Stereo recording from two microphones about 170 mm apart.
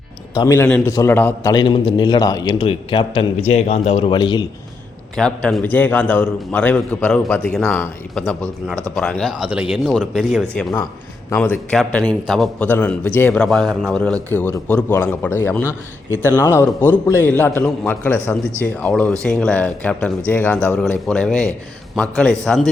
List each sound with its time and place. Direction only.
0.3 s a man's voice: 15° left (ahead or behind)
1.5 s a man's voice: 25° left (ahead or behind)
5.1 s a man's voice: 5° left (ahead or behind)